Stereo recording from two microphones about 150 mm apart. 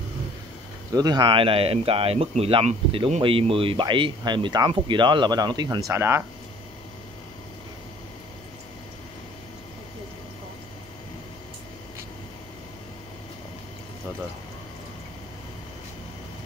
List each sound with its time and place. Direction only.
0.9 s speech: 25° right (ahead or behind)